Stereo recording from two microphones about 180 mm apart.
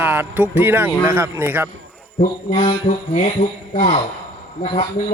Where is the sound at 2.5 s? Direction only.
40° left (ahead or behind).